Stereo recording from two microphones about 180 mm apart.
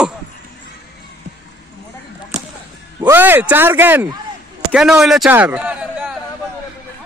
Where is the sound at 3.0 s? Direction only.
10° right (ahead or behind).